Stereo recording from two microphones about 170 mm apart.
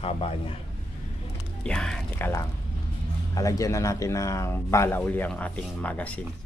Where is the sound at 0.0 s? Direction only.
35° left (ahead or behind).